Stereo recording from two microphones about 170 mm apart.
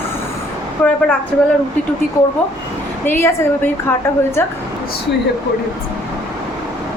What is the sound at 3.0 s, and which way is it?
Speech, 15° left (ahead or behind).